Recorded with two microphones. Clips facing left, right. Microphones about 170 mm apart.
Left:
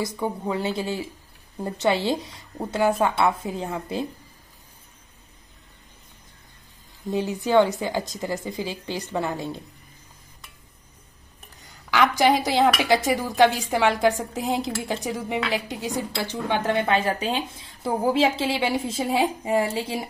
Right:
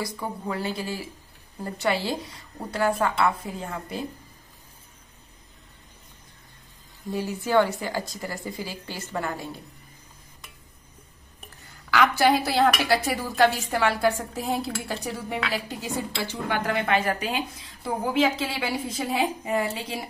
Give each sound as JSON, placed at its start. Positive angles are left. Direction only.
{"t": 0.2, "sound": "a woman's voice", "side_deg": 20}
{"t": 7.1, "sound": "a woman's voice", "side_deg": 20}
{"t": 11.9, "sound": "a woman's voice", "side_deg": 15}